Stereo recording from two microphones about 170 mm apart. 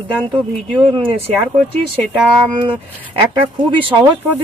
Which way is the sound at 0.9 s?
30° right (ahead or behind).